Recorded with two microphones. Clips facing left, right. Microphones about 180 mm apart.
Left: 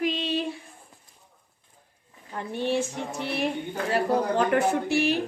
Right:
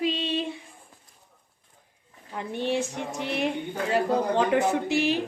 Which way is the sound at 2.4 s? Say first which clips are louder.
Left 1 dB; 20° right (ahead or behind).